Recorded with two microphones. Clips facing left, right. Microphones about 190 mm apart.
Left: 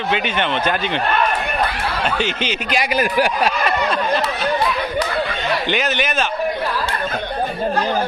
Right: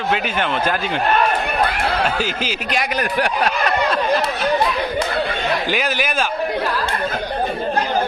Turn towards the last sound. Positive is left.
turn(degrees=-5)  # may be behind; listen again after turning